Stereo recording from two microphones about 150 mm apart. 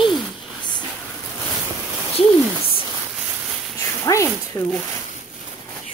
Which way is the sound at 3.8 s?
20° left (ahead or behind).